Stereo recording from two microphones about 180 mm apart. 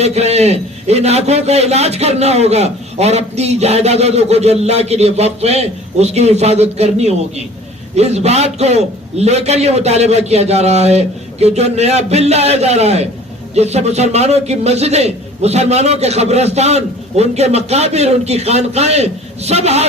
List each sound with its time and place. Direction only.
0.0 s a man's voice: 35° right (ahead or behind)